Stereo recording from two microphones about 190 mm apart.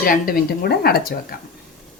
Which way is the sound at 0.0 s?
50° left (ahead or behind).